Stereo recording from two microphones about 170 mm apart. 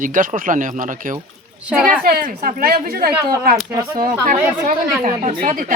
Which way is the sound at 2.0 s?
60° right (ahead or behind).